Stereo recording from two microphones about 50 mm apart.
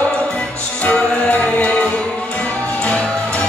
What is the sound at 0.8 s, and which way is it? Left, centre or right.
Music, left.